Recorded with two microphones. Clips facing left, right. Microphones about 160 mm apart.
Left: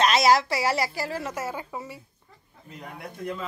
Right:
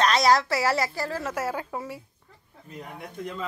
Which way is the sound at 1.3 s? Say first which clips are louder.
Right 3 dB; 5° right (ahead or behind).